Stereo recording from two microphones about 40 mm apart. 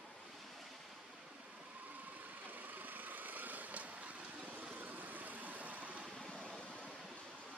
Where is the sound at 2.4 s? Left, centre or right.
Right.